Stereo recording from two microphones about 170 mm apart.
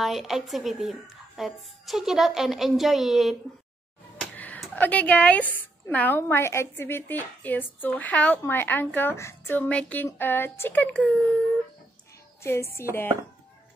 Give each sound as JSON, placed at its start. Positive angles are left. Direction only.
{"t": 0.0, "sound": "speech", "side_deg": 0}
{"t": 4.2, "sound": "a sound", "side_deg": 5}
{"t": 5.5, "sound": "speech", "side_deg": 10}
{"t": 12.4, "sound": "speech", "side_deg": 15}